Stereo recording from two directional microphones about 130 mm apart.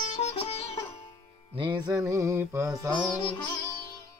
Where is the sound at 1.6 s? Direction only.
35° right (ahead or behind); by 2.7 s 20° right (ahead or behind).